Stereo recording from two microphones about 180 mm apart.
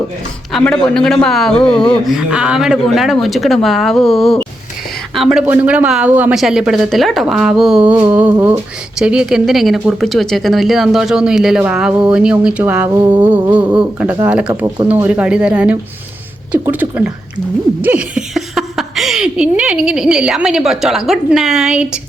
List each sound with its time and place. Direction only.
0.5 s speech: 5° left (ahead or behind)